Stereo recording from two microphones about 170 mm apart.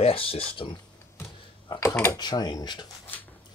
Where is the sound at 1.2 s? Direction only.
20° left (ahead or behind).